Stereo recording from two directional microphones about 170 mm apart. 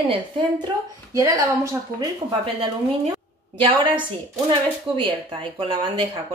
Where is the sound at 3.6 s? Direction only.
30° right (ahead or behind).